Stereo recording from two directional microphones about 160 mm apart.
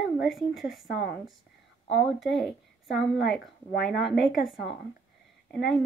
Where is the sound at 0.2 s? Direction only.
Centre (ahead or behind).